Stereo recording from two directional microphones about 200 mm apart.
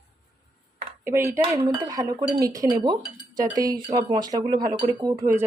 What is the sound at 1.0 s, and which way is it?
Speech, 15° right (ahead or behind).